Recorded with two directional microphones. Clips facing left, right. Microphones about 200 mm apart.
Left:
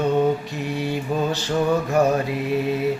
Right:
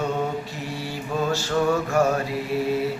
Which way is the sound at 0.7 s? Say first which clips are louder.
Left 4 dB; 20° left (ahead or behind).